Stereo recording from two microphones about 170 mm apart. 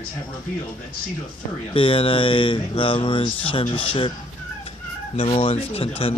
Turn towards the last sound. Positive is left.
turn(degrees=35)  # may be behind; listen again after turning